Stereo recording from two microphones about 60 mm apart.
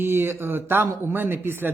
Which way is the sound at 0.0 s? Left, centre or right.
Right.